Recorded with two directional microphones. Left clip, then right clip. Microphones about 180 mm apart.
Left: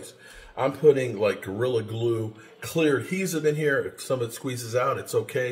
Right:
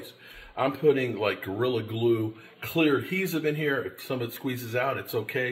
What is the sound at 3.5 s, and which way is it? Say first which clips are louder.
Speech: left 8 dB; 10° right (ahead or behind).